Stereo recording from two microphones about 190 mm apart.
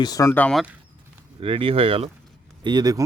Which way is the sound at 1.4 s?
25° right (ahead or behind).